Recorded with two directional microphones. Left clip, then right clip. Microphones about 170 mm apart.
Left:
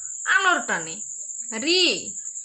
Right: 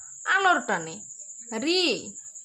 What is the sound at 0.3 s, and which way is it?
Speech, 35° right (ahead or behind).